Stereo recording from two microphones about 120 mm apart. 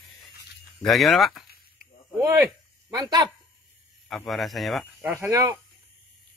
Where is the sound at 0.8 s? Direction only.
Centre (ahead or behind).